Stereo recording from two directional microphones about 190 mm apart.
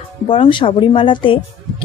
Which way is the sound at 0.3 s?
25° left (ahead or behind).